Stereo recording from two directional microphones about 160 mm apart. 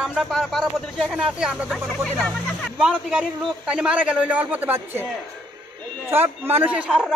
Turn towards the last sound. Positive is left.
turn(degrees=-5)  # may be behind; listen again after turning